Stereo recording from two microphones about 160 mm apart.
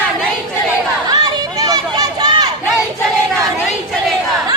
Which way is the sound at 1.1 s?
25° right (ahead or behind).